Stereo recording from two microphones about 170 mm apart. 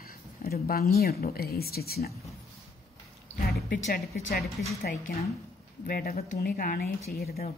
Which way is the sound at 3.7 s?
55° left (ahead or behind).